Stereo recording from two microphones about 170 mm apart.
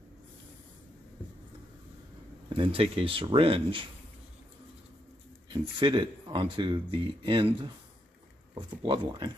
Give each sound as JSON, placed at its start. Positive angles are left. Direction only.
{"t": 2.5, "sound": "speech", "side_deg": -30}
{"t": 5.5, "sound": "speech", "side_deg": -25}
{"t": 8.5, "sound": "speech", "side_deg": -25}